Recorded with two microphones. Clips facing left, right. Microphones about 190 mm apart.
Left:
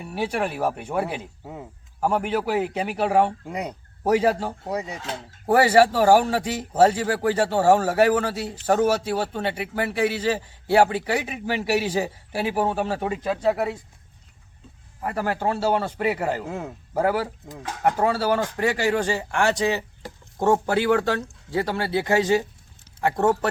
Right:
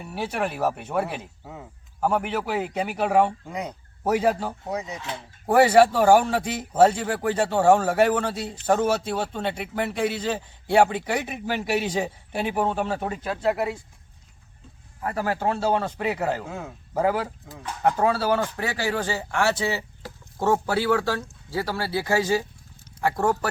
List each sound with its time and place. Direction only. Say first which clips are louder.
0.0 s speech: left 2 dB; 10° left (ahead or behind)
15.0 s speech: even; 10° left (ahead or behind)